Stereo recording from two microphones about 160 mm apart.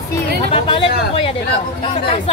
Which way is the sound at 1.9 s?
35° left (ahead or behind).